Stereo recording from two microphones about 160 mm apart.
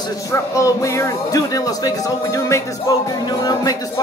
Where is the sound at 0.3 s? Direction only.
20° left (ahead or behind).